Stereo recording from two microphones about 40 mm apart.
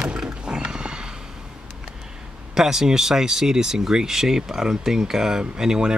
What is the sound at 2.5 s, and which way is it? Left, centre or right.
Speech, centre.